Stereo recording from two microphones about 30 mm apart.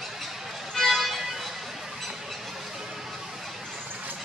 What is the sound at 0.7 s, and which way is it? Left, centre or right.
Music, centre.